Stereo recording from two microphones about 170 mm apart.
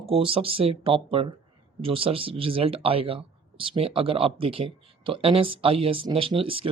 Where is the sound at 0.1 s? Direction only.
30° right (ahead or behind).